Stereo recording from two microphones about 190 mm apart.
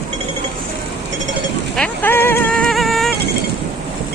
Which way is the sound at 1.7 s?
10° left (ahead or behind).